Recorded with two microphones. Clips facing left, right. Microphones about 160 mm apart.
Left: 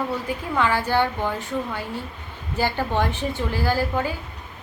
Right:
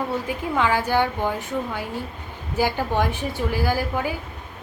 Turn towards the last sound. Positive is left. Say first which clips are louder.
# left 1 dB
turn(degrees=-10)  # may be behind; listen again after turning